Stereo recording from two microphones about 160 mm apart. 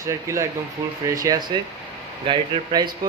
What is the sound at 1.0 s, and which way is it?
Speech, 20° right (ahead or behind).